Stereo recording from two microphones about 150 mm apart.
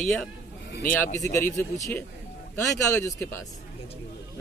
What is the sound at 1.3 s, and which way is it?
A man's voice, 15° left (ahead or behind).